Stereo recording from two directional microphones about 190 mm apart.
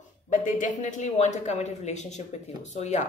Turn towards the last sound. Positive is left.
turn(degrees=40)  # may be behind; listen again after turning